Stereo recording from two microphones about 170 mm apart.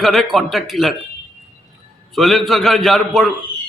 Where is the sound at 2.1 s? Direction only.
Centre (ahead or behind).